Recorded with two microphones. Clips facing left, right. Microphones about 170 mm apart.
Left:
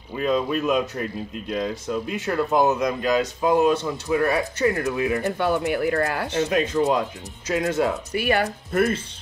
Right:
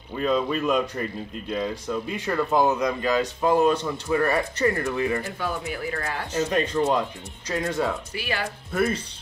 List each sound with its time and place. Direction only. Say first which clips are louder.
0.1 s speech: left 1 dB; 5° left (ahead or behind)
5.2 s speech: left 8 dB; 65° left (ahead or behind)
6.5 s speech: left 1 dB; 5° left (ahead or behind)
8.2 s speech: left 11 dB; 55° left (ahead or behind)
8.7 s speech: left 3 dB; centre (ahead or behind)